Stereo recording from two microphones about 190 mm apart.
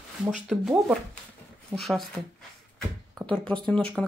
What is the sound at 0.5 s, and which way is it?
Speech, 5° right (ahead or behind).